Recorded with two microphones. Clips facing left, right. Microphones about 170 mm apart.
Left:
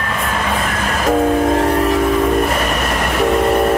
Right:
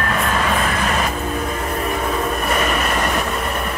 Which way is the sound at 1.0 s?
90° left.